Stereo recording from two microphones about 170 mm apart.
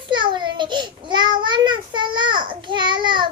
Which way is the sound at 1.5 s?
25° right (ahead or behind).